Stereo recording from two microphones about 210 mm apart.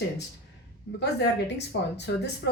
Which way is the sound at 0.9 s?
55° left (ahead or behind).